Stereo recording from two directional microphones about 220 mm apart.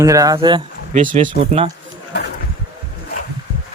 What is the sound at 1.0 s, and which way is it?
Speech, 35° right (ahead or behind).